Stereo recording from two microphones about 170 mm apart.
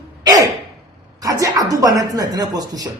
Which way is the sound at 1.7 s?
20° right (ahead or behind).